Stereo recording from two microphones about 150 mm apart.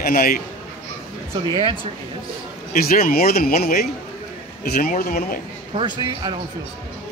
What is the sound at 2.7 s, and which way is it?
A man's voice, 80° left.